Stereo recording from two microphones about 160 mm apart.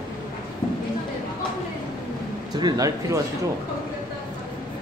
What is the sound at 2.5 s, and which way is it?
Speech, 25° right (ahead or behind).